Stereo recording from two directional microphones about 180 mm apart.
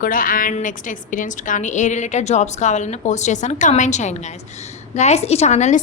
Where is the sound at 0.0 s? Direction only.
50° left (ahead or behind).